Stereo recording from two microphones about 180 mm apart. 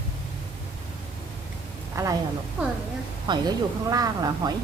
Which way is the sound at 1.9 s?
15° right (ahead or behind).